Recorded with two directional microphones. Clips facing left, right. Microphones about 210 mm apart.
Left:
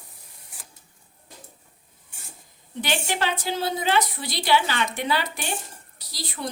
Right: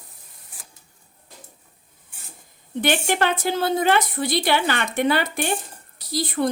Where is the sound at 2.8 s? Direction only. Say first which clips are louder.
Right 5 dB; 55° right (ahead or behind).